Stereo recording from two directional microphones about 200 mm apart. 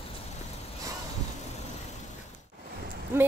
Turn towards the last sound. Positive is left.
turn(degrees=-10)  # may be behind; listen again after turning